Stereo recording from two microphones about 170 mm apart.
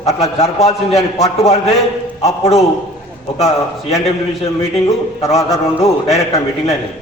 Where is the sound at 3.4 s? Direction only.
40° left (ahead or behind).